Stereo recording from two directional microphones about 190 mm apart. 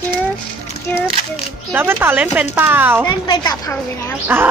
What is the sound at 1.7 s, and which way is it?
A woman's voice, 10° right (ahead or behind).